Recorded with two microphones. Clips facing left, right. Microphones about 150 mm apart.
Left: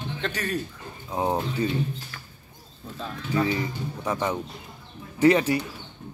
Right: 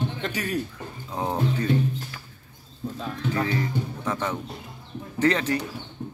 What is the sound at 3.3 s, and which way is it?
Speech, 15° left (ahead or behind).